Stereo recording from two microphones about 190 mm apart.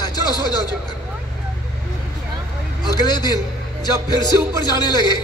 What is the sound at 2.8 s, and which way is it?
Speech, 20° left (ahead or behind).